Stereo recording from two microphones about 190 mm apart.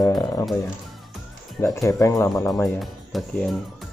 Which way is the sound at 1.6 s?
15° left (ahead or behind).